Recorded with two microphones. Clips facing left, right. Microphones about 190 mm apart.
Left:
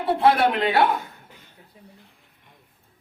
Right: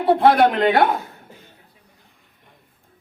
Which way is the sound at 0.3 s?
45° right (ahead or behind).